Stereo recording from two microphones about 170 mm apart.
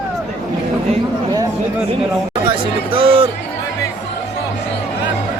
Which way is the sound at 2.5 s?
30° right (ahead or behind).